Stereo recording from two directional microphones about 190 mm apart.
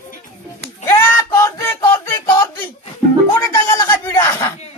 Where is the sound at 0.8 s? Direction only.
15° left (ahead or behind).